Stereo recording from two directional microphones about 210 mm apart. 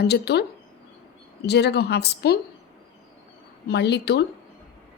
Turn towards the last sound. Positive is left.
turn(degrees=55)  # may be behind; listen again after turning